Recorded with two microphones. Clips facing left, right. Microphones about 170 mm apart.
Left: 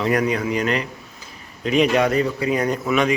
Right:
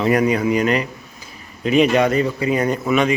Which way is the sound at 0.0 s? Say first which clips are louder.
Right 4 dB; 10° right (ahead or behind).